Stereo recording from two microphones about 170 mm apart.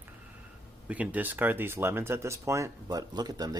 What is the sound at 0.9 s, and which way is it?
Speech, 10° right (ahead or behind).